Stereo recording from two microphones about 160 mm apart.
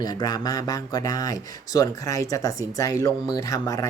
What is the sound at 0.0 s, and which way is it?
Speech, 25° left (ahead or behind).